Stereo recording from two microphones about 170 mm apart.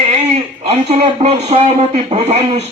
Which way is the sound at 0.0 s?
40° right (ahead or behind).